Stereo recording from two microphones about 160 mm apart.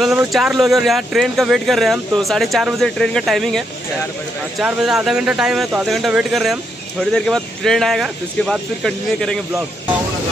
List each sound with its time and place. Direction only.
0.3 s speech: centre (ahead or behind)